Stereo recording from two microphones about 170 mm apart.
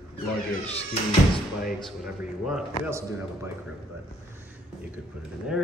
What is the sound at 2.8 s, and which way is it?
Speech, 15° right (ahead or behind).